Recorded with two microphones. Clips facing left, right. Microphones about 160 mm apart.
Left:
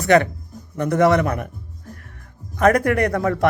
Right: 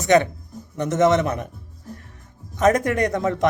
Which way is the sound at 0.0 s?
20° right (ahead or behind).